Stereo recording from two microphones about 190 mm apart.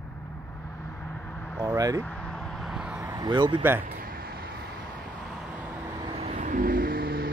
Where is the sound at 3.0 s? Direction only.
20° right (ahead or behind).